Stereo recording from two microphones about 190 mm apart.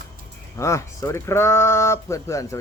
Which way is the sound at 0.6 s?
15° left (ahead or behind).